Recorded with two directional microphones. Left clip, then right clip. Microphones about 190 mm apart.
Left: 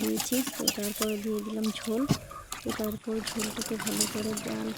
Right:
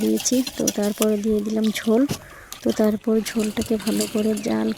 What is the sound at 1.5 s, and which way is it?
Speech, 35° right (ahead or behind).